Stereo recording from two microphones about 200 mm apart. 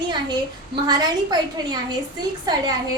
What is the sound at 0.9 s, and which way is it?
Speech, 20° right (ahead or behind).